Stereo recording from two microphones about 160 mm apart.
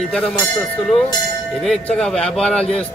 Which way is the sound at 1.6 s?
5° left (ahead or behind).